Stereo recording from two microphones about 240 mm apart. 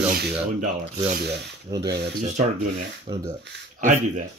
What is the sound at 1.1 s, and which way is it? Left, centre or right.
Speech, right.